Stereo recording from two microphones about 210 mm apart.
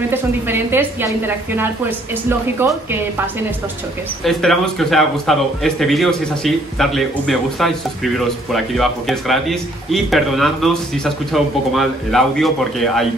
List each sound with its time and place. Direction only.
0.1 s a woman's voice: 10° right (ahead or behind)
4.2 s a man's voice: centre (ahead or behind)